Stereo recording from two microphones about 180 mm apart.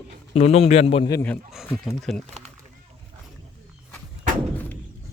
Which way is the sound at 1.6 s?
Centre (ahead or behind).